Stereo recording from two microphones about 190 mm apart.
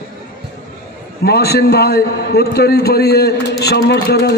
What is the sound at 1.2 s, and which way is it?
A man's voice, 60° left (ahead or behind).